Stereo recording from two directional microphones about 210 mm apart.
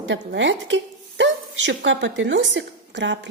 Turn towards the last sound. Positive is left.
turn(degrees=-60)  # may be behind; listen again after turning